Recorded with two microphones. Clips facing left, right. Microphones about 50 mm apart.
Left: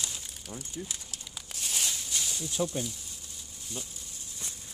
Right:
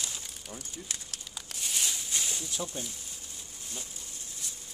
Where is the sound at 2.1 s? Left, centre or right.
Centre.